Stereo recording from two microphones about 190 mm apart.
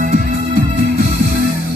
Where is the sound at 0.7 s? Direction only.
60° right (ahead or behind).